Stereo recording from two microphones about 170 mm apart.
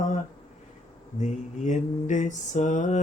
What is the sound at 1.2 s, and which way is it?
Mantra, 45° left (ahead or behind).